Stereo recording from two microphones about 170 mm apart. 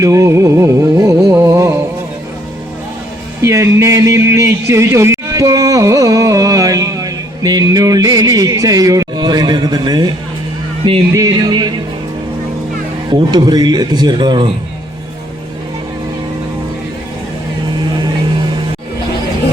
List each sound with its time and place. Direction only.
0.0 s music: 20° right (ahead or behind)
3.4 s a sound: 15° right (ahead or behind)
11.1 s speech: 20° right (ahead or behind)
13.1 s speech: 25° right (ahead or behind)